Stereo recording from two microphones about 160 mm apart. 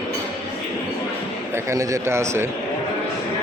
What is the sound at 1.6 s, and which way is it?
Speech, 20° right (ahead or behind).